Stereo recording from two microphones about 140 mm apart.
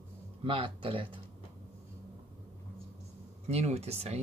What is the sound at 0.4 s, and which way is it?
Speech, 40° right (ahead or behind).